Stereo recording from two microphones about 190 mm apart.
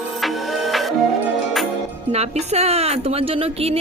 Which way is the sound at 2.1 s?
35° right (ahead or behind).